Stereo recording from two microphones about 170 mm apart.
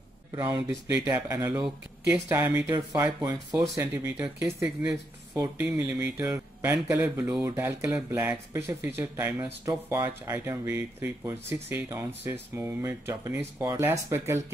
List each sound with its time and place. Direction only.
0.4 s speech: 15° right (ahead or behind)
2.2 s speech: 10° right (ahead or behind)